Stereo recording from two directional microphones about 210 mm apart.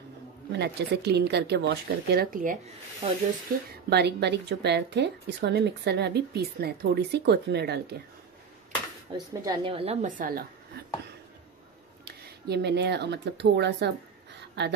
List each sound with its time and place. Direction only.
0.5 s speech: 50° right (ahead or behind)
3.9 s speech: 50° right (ahead or behind)
9.1 s speech: 15° right (ahead or behind)
9.8 s a woman's voice: 35° right (ahead or behind)
12.0 s speech: 50° right (ahead or behind)